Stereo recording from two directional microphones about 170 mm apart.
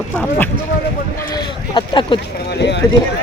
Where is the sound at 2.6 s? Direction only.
90° left.